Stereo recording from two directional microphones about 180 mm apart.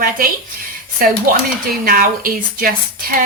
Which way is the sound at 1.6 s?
50° right (ahead or behind).